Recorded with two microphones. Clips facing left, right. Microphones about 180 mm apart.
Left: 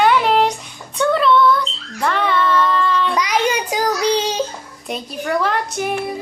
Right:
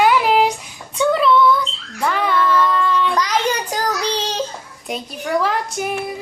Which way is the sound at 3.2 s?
10° left (ahead or behind).